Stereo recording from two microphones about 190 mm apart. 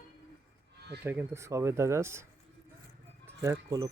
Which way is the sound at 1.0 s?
10° right (ahead or behind).